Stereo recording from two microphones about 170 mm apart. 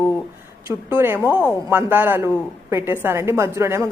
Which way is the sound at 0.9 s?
10° right (ahead or behind).